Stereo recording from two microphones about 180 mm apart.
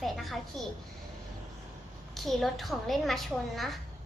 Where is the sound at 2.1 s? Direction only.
Centre (ahead or behind).